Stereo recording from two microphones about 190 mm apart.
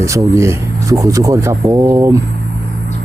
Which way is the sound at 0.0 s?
15° right (ahead or behind).